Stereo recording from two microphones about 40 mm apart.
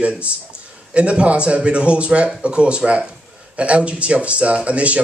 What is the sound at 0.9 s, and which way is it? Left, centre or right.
Speech, right.